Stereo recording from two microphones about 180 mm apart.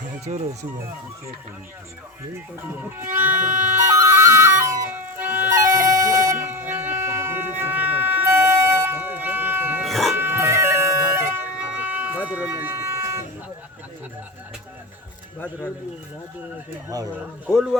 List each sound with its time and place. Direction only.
3.3 s music: 45° right (ahead or behind)
3.8 s music: 15° right (ahead or behind)
6.0 s a sound: 20° right (ahead or behind)
9.8 s dog: centre (ahead or behind)
10.2 s a sound: 10° right (ahead or behind)
17.5 s speech: centre (ahead or behind)